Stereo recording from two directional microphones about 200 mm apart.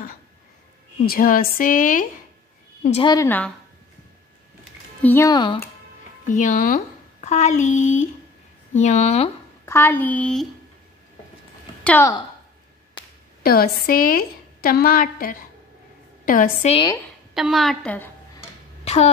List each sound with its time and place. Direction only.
1.0 s a woman's voice: 45° left (ahead or behind)
3.0 s a woman's voice: 20° left (ahead or behind)
3.3 s a child's voice: 10° left (ahead or behind)
5.0 s a child's voice: 10° left (ahead or behind)
6.2 s speech: 40° left (ahead or behind)
9.7 s a child's voice: 10° left (ahead or behind)
11.8 s a woman's voice: 10° left (ahead or behind)
13.4 s a woman's voice: 45° left (ahead or behind)
16.7 s a woman's voice: 20° left (ahead or behind)
17.3 s a woman's voice: centre (ahead or behind)